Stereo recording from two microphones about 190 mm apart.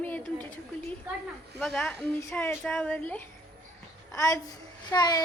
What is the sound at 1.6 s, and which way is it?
Speech, 5° left (ahead or behind).